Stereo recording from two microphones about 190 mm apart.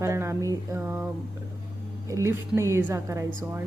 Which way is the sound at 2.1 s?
15° right (ahead or behind).